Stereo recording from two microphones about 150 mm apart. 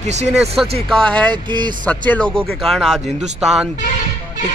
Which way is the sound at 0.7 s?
40° right (ahead or behind).